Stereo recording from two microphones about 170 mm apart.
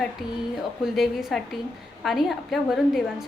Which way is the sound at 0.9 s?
Centre (ahead or behind).